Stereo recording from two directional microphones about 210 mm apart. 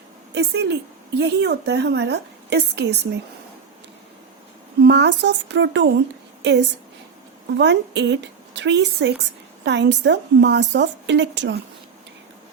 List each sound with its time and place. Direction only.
0.3 s a woman's voice: 55° right (ahead or behind)
4.8 s a woman's voice: 55° right (ahead or behind)
7.6 s a woman's voice: 55° right (ahead or behind)